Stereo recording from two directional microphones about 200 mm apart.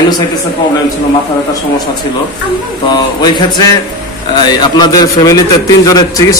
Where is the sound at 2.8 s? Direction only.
20° left (ahead or behind).